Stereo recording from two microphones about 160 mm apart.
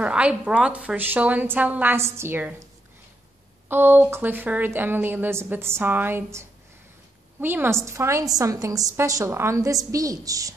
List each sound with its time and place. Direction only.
0.0 s a woman's voice: 5° right (ahead or behind)
3.6 s a woman's voice: 15° right (ahead or behind)